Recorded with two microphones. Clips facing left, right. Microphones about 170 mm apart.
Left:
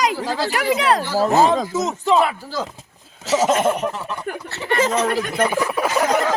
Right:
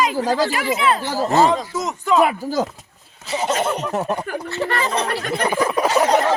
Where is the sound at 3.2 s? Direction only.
90° left.